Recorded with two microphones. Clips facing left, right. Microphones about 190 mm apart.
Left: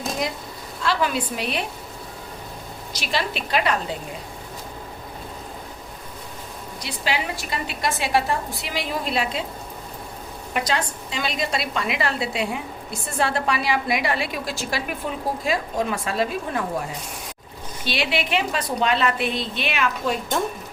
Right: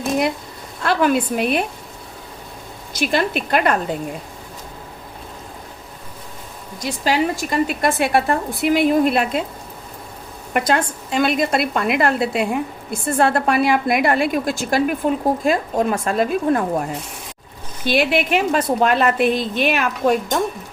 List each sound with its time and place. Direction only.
0.8 s a woman's voice: 55° right (ahead or behind)
2.9 s a woman's voice: 50° right (ahead or behind)
6.7 s a woman's voice: 45° right (ahead or behind)
10.5 s a woman's voice: 50° right (ahead or behind)
17.8 s a woman's voice: 50° right (ahead or behind)